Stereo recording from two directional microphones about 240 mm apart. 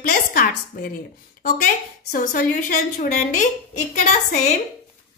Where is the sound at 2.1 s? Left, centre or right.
Left.